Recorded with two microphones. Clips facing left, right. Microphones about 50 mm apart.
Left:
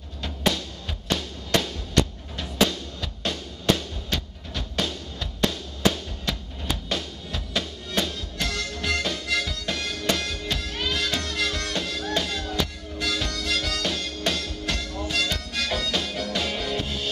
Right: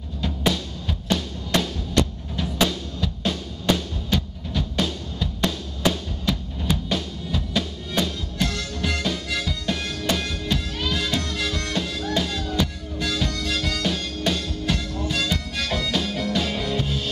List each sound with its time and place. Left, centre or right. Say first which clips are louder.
0.2 s music: right 2 dB; centre
12.4 s harmonica: right 3 dB; centre
15.0 s music: right 2 dB; centre